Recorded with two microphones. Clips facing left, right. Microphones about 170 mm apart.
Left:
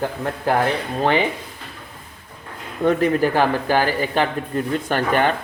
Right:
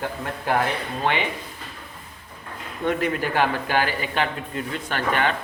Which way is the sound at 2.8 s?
35° left (ahead or behind).